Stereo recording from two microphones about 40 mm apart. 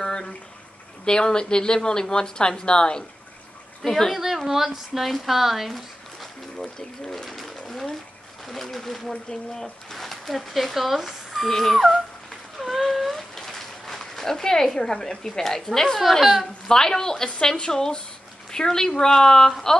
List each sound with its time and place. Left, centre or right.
0.0 s a sound: centre
1.0 s a woman's voice: centre
3.9 s speech: centre
4.2 s speech: centre
6.8 s a woman's voice: centre
11.7 s speech: centre
12.5 s a sound: centre
16.0 s speech: centre
16.6 s a woman's voice: centre